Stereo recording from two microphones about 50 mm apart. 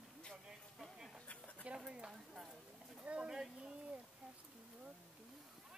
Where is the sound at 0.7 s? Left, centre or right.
Centre.